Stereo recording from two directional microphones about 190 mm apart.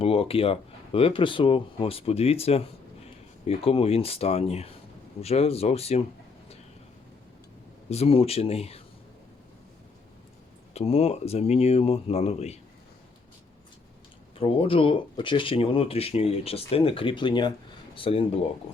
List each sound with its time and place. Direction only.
0.0 s speech: 30° left (ahead or behind)
7.9 s speech: 30° left (ahead or behind)
10.8 s speech: 30° left (ahead or behind)
14.3 s speech: 30° left (ahead or behind)